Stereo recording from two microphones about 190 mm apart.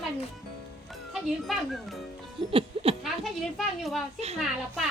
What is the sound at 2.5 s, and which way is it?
Music, 30° right (ahead or behind).